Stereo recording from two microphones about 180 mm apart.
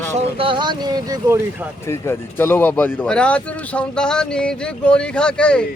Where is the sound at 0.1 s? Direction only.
35° right (ahead or behind).